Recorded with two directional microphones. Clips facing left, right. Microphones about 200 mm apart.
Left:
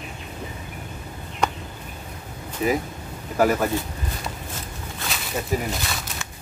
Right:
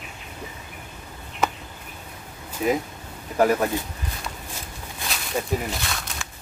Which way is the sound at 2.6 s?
5° left (ahead or behind).